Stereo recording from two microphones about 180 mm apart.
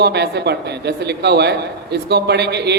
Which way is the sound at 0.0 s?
70° right (ahead or behind).